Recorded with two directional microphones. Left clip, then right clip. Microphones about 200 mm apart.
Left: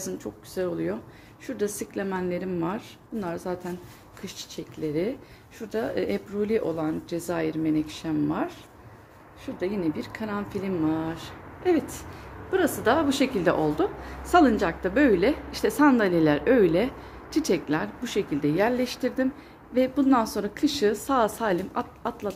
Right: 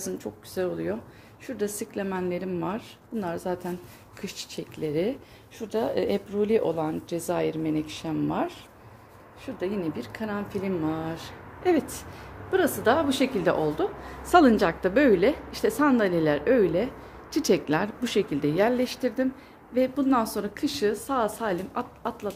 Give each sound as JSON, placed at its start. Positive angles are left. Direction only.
{"t": 0.0, "sound": "a woman's voice", "side_deg": -10}
{"t": 4.2, "sound": "a woman's voice", "side_deg": -25}
{"t": 9.6, "sound": "a woman's voice", "side_deg": -5}
{"t": 14.2, "sound": "a woman's voice", "side_deg": -20}
{"t": 17.3, "sound": "a woman's voice", "side_deg": -20}